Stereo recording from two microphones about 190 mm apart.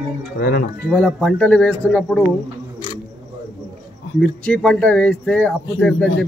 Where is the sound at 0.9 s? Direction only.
Centre (ahead or behind).